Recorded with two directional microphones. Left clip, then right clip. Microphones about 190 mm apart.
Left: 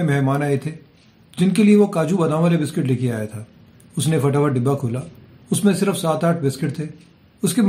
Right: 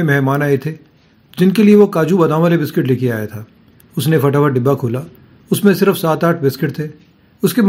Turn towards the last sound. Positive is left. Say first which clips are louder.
# right 6 dB
turn(degrees=-30)  # may be behind; listen again after turning